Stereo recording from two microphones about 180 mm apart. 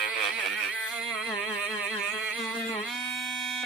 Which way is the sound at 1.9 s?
Centre (ahead or behind).